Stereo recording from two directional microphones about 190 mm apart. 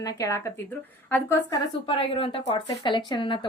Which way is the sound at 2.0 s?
30° left (ahead or behind).